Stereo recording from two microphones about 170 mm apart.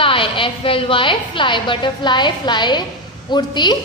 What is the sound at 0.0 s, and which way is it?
A woman's voice, 30° left (ahead or behind).